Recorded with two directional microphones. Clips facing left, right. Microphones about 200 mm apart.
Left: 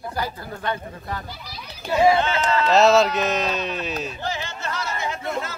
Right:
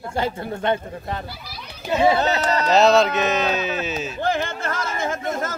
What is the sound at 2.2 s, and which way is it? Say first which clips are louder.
Carnatic music: right 1 dB; 40° right (ahead or behind).